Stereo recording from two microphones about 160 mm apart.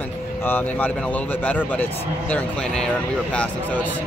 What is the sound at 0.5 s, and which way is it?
A man's voice, 10° left (ahead or behind).